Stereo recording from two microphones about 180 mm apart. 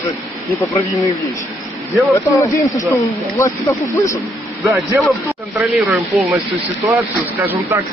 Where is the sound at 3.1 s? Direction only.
15° left (ahead or behind).